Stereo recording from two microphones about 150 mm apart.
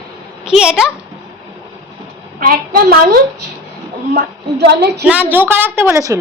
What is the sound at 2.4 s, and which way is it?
A woman's voice, 80° right.